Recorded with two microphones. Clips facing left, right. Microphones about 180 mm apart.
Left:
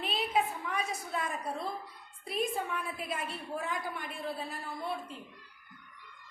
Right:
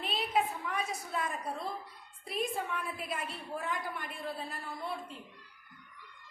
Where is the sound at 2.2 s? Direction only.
Centre (ahead or behind).